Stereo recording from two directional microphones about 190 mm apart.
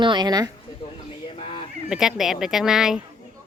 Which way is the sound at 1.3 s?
30° left (ahead or behind).